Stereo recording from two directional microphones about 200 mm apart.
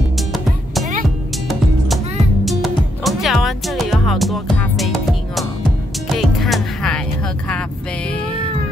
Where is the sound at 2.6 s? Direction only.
Centre (ahead or behind).